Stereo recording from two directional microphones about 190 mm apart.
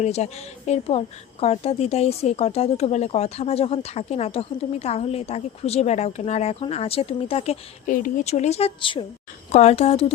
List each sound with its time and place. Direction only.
0.0 s a woman's voice: 35° left (ahead or behind)
7.9 s a woman's voice: 45° left (ahead or behind)